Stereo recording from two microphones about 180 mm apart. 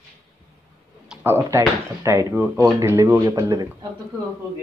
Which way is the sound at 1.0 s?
10° right (ahead or behind).